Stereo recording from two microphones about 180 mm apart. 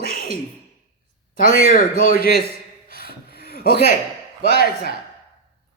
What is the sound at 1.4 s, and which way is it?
Speech, 50° left (ahead or behind).